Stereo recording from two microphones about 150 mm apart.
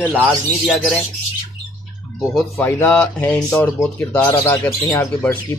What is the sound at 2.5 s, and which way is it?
Speech, 15° left (ahead or behind).